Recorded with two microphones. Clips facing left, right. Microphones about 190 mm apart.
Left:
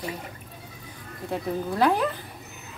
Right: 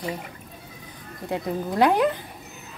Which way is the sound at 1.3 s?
15° right (ahead or behind).